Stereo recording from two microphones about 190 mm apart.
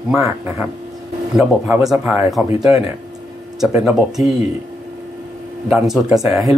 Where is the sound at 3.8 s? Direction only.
Centre (ahead or behind).